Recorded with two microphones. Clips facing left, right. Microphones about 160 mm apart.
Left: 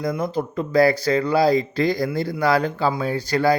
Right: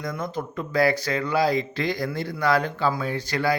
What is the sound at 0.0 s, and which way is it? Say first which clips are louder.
Speech: left 6 dB; 30° left (ahead or behind).